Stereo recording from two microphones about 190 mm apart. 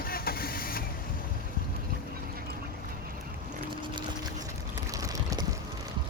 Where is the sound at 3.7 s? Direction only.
25° right (ahead or behind).